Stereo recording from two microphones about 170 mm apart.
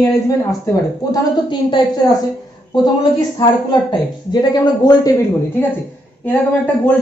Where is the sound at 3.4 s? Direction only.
25° left (ahead or behind).